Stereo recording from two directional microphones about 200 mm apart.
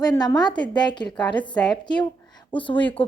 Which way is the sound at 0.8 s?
20° left (ahead or behind).